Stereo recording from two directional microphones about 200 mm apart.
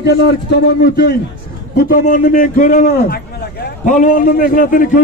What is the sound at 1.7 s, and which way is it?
A man's voice, 40° left (ahead or behind).